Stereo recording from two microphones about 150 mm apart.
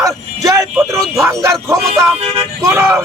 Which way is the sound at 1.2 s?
20° right (ahead or behind).